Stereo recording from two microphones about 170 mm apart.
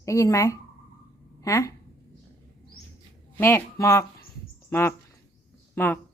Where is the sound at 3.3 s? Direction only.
15° left (ahead or behind).